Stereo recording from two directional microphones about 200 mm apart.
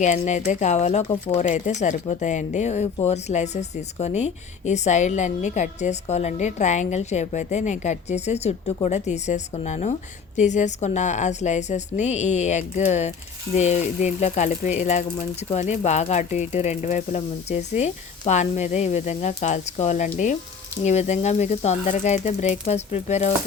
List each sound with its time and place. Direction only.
0.0 s speech: 35° left (ahead or behind)